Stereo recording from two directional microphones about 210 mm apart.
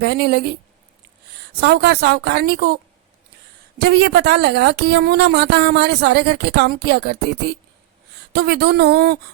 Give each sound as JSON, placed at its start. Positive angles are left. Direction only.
{"t": 0.0, "sound": "a woman's voice", "side_deg": -50}
{"t": 1.6, "sound": "a woman's voice", "side_deg": -50}
{"t": 3.8, "sound": "a woman's voice", "side_deg": -50}